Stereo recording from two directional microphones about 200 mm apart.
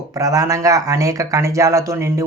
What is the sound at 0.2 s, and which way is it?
Speech, 15° right (ahead or behind).